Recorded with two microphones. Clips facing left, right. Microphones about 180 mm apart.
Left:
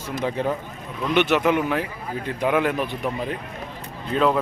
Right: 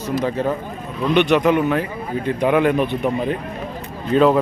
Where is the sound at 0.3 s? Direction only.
15° left (ahead or behind).